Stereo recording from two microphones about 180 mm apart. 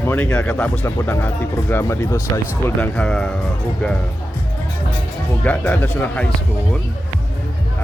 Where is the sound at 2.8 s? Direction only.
5° left (ahead or behind).